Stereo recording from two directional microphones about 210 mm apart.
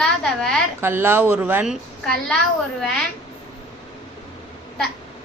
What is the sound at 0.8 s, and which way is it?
A child's voice, 10° right (ahead or behind).